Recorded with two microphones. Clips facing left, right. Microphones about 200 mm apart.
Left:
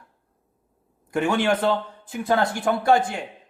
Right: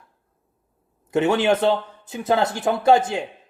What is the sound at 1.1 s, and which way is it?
A man's voice, 20° right (ahead or behind).